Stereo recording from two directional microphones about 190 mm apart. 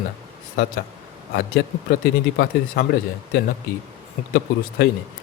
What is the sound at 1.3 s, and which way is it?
Speech, 60° left (ahead or behind).